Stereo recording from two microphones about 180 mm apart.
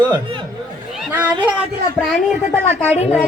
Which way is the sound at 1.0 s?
10° right (ahead or behind).